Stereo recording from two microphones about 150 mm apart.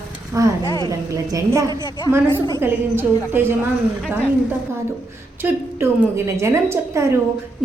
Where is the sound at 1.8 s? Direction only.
30° left (ahead or behind).